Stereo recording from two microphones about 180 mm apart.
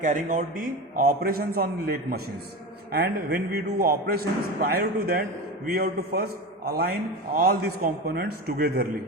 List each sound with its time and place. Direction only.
0.0 s a man's voice: 45° right (ahead or behind)